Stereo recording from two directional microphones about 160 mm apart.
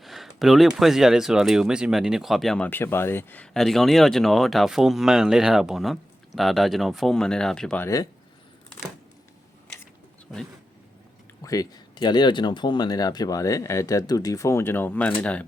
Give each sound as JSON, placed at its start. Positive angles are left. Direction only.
{"t": 0.0, "sound": "speech", "side_deg": 0}
{"t": 2.6, "sound": "speech", "side_deg": 15}
{"t": 10.3, "sound": "speech", "side_deg": 10}
{"t": 11.4, "sound": "speech", "side_deg": 25}